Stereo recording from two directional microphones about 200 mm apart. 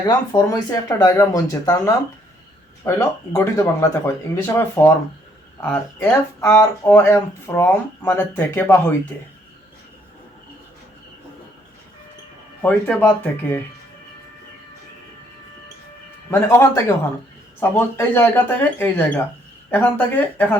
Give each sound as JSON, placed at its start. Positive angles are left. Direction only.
{"t": 0.1, "sound": "speech", "side_deg": 20}
{"t": 12.6, "sound": "speech", "side_deg": 10}
{"t": 16.3, "sound": "speech", "side_deg": 15}